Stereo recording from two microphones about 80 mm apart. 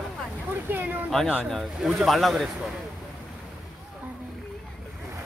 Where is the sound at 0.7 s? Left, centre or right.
Right.